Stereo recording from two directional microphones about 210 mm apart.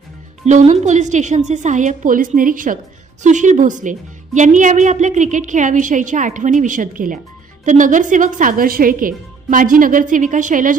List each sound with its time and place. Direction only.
0.4 s a woman's voice: 35° right (ahead or behind)